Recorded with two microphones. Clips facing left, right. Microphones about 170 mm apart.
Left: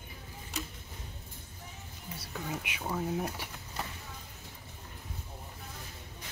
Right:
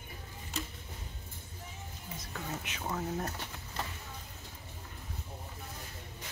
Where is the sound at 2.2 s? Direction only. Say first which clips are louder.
Left 3 dB; 10° left (ahead or behind).